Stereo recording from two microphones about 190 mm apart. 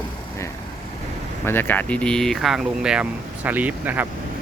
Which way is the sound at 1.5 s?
10° left (ahead or behind).